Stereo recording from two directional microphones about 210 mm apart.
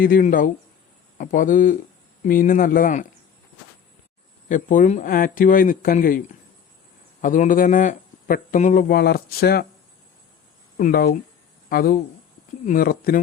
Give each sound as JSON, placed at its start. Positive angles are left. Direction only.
{"t": 0.0, "sound": "a man's voice", "side_deg": 40}
{"t": 4.4, "sound": "a man's voice", "side_deg": 40}
{"t": 10.8, "sound": "a man's voice", "side_deg": 40}